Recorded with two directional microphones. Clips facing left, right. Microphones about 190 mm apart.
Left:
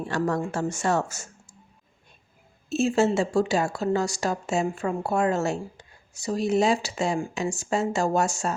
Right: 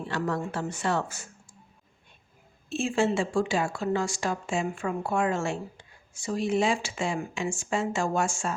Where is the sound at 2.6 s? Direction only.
40° left (ahead or behind).